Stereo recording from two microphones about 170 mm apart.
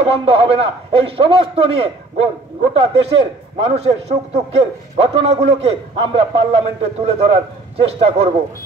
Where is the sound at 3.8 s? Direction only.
40° right (ahead or behind).